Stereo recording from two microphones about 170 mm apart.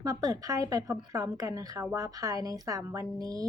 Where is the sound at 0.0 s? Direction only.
20° right (ahead or behind).